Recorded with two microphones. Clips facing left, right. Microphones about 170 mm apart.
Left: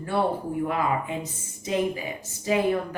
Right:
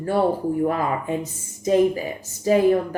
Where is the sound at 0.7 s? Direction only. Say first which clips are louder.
Right 3 dB; 40° right (ahead or behind).